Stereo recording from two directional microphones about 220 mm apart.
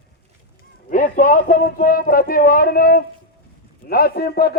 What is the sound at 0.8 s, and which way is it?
A man's voice, 35° left (ahead or behind).